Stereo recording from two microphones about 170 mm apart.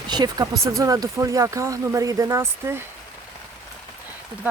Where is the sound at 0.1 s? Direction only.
25° right (ahead or behind).